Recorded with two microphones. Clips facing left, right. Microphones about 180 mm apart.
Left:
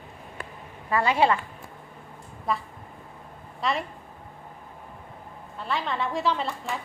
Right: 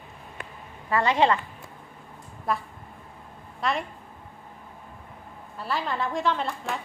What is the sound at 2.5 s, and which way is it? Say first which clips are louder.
A woman's voice: even; centre (ahead or behind).